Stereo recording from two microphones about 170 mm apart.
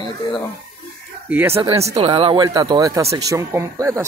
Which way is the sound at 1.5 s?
35° right (ahead or behind).